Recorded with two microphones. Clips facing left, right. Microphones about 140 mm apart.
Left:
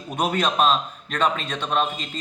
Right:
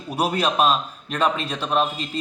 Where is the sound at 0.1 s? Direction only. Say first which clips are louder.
Right 1 dB; 10° right (ahead or behind).